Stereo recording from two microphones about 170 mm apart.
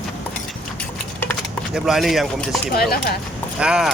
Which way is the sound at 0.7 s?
10° left (ahead or behind).